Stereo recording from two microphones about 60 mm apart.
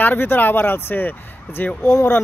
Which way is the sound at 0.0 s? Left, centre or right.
Left.